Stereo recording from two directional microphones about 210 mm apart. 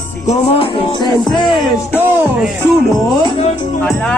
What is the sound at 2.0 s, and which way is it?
Speech, 5° right (ahead or behind).